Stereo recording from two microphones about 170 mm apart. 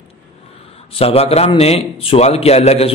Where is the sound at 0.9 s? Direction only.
35° left (ahead or behind).